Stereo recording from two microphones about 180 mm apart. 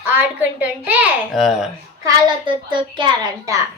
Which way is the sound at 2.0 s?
25° right (ahead or behind).